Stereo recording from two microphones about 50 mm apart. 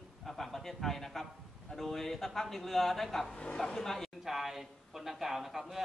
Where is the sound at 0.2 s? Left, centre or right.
Centre.